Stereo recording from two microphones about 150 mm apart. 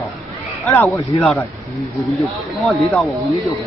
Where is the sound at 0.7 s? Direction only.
15° left (ahead or behind).